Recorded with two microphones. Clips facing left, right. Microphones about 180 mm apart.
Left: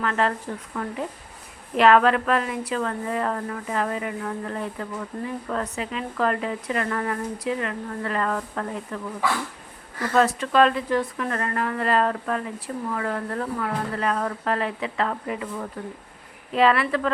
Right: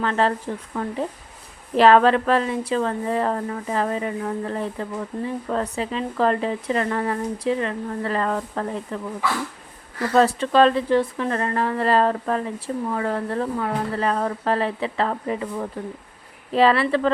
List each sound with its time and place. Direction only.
0.0 s a woman's voice: 30° right (ahead or behind)
10.2 s a woman's voice: 30° right (ahead or behind)